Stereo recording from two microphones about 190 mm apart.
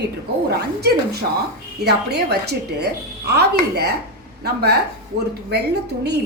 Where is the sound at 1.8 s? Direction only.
60° right (ahead or behind).